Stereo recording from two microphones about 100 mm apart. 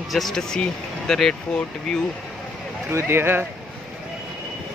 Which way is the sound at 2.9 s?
25° right (ahead or behind).